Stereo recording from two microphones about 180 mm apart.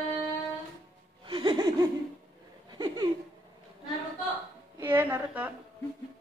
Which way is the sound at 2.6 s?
25° right (ahead or behind).